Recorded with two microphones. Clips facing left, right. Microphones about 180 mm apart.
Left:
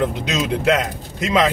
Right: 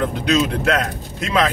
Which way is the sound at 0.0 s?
20° left (ahead or behind).